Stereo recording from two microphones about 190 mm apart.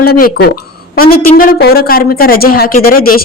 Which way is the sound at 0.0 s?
55° left (ahead or behind).